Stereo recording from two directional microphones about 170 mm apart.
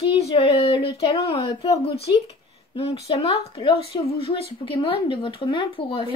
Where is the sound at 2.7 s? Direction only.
35° left (ahead or behind).